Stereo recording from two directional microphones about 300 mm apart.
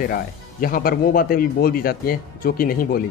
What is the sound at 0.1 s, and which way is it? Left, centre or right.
Speech, left.